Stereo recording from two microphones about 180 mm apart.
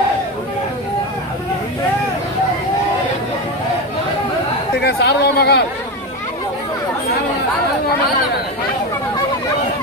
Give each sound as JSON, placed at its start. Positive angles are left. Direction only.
{"t": 4.8, "sound": "speech", "side_deg": 65}